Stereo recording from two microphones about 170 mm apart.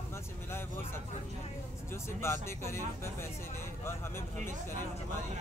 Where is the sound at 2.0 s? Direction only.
15° left (ahead or behind).